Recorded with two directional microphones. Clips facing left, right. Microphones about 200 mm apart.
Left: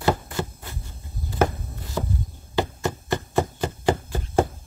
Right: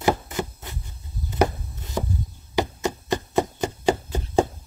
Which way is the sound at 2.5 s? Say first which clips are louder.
Right 1 dB; 15° right (ahead or behind).